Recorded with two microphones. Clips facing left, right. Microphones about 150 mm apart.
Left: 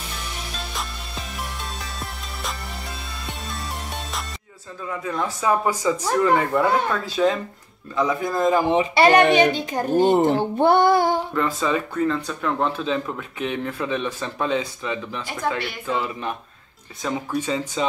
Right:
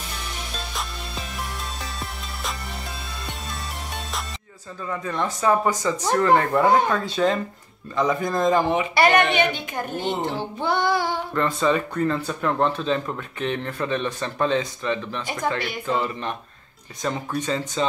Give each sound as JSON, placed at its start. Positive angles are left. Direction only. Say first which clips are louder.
{"t": 0.7, "sound": "music", "louder": "even", "side_deg": 0}
{"t": 4.8, "sound": "a man's voice", "louder": "even", "side_deg": 5}
{"t": 8.6, "sound": "speech", "louder": "left 3 dB", "side_deg": 25}
{"t": 10.1, "sound": "speech", "louder": "left 9 dB", "side_deg": 55}
{"t": 11.3, "sound": "speech", "louder": "right 1 dB", "side_deg": 5}